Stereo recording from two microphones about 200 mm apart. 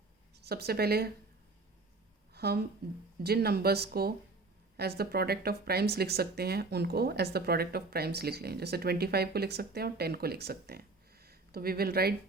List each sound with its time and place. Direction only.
0.3 s speech: 55° right (ahead or behind)
2.3 s a woman's voice: 50° right (ahead or behind)